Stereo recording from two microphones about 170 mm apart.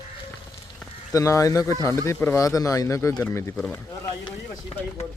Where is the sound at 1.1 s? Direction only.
20° left (ahead or behind).